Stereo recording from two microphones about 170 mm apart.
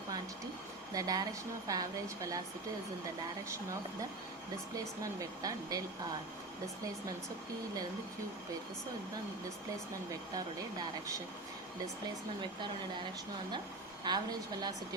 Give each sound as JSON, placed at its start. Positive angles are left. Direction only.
{"t": 0.9, "sound": "a woman's voice", "side_deg": -20}
{"t": 5.4, "sound": "a woman's voice", "side_deg": -20}
{"t": 14.0, "sound": "a woman's voice", "side_deg": -25}